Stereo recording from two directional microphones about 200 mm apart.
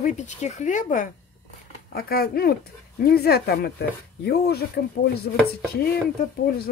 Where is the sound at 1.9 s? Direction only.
50° left (ahead or behind).